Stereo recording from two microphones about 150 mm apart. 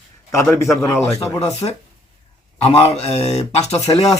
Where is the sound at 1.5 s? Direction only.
45° left (ahead or behind).